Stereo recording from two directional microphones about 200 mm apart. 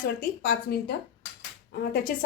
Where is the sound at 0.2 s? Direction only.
50° left (ahead or behind).